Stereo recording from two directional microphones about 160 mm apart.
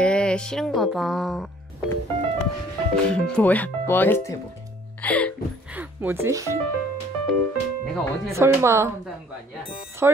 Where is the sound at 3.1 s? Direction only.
5° left (ahead or behind).